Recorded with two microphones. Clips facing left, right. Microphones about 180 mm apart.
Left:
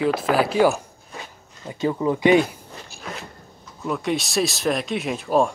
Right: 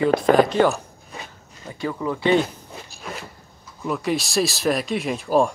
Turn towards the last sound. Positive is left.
turn(degrees=0)  # may be behind; listen again after turning